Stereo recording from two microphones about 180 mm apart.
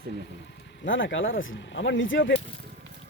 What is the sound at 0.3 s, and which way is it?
Speech, 80° left.